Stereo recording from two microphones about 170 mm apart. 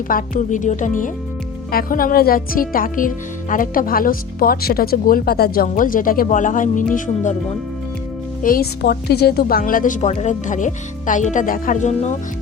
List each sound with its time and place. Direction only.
0.1 s speech: 50° left (ahead or behind)
5.6 s speech: 50° left (ahead or behind)
8.4 s speech: 55° left (ahead or behind)